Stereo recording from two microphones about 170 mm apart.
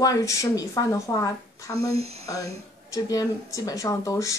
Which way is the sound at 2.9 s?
20° left (ahead or behind).